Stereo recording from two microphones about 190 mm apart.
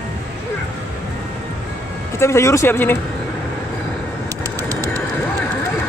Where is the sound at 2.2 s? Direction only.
15° left (ahead or behind).